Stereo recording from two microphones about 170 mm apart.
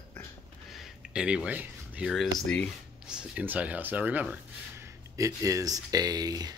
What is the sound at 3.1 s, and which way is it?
Speech, 5° right (ahead or behind).